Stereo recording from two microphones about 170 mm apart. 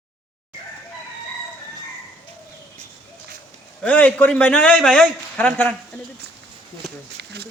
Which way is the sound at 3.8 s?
10° left (ahead or behind).